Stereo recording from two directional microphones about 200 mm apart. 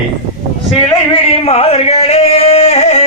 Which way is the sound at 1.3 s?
30° left (ahead or behind).